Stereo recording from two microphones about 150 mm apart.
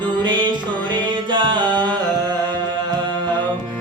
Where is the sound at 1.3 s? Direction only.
30° right (ahead or behind).